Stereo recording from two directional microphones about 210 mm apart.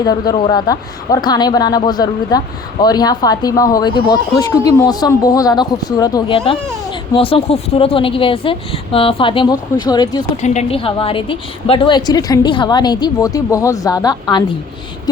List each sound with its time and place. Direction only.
0.0 s a woman's voice: 20° left (ahead or behind)
10.4 s a woman's voice: 30° left (ahead or behind)